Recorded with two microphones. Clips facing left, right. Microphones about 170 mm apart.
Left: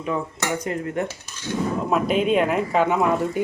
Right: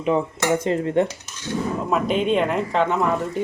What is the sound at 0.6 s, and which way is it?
Dishes, 25° right (ahead or behind).